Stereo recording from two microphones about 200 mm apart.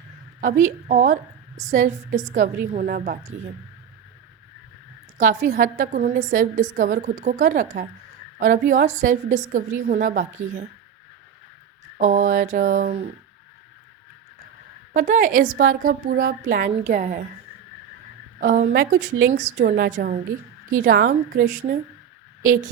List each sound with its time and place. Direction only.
0.4 s a woman's voice: 40° right (ahead or behind)
5.1 s a woman's voice: 35° right (ahead or behind)
11.9 s a woman's voice: 40° right (ahead or behind)
14.9 s a woman's voice: 40° right (ahead or behind)
18.3 s a woman's voice: 40° right (ahead or behind)
19.6 s a woman's voice: 50° right (ahead or behind)